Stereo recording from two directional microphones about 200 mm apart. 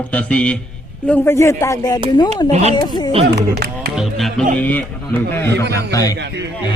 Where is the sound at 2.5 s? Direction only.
35° right (ahead or behind).